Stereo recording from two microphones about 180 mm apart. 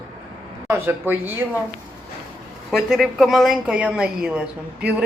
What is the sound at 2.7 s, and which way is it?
Speech, centre (ahead or behind).